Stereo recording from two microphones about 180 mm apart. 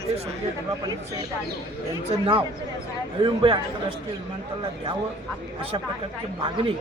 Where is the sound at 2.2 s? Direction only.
30° right (ahead or behind).